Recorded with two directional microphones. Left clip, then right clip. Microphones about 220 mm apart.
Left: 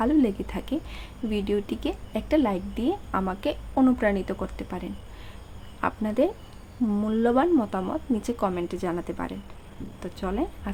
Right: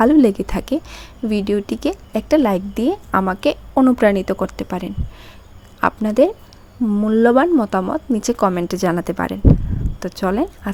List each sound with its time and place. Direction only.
0.0 s a woman's voice: 35° right (ahead or behind)